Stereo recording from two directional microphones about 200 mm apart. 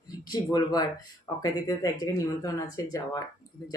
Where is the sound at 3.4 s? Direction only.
20° left (ahead or behind).